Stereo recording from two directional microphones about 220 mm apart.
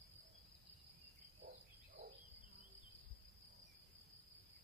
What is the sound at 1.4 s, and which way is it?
Frog, 40° right (ahead or behind).